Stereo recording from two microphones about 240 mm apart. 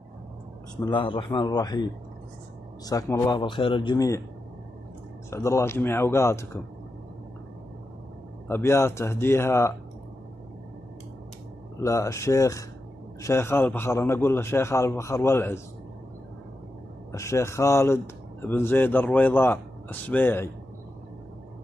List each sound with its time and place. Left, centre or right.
0.7 s speech: centre
5.3 s speech: centre
8.5 s speech: centre
11.8 s speech: centre
17.1 s speech: centre